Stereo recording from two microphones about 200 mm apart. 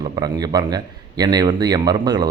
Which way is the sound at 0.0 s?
20° right (ahead or behind).